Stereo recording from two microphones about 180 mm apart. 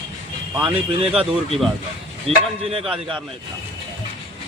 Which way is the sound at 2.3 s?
35° right (ahead or behind).